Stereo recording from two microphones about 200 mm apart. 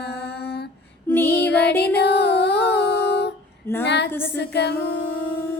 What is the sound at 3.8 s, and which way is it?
Female singing, 60° left (ahead or behind).